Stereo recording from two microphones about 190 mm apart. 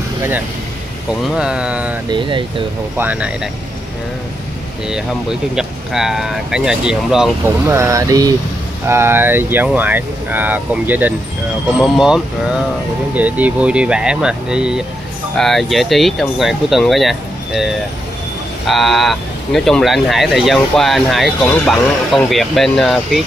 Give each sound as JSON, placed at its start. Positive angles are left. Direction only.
{"t": 1.2, "sound": "speech", "side_deg": -5}
{"t": 2.0, "sound": "speech", "side_deg": -25}
{"t": 3.0, "sound": "speech", "side_deg": -10}
{"t": 4.8, "sound": "speech", "side_deg": -5}